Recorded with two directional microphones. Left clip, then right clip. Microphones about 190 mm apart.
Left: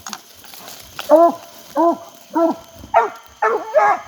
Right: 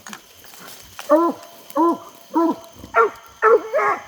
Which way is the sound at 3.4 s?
50° left (ahead or behind).